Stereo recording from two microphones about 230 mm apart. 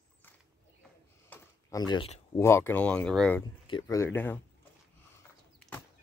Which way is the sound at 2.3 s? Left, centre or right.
Centre.